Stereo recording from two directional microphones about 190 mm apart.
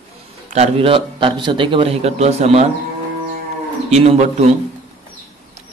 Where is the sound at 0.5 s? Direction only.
30° right (ahead or behind).